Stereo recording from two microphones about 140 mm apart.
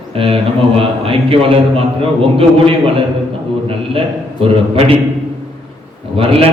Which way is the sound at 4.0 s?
40° right (ahead or behind).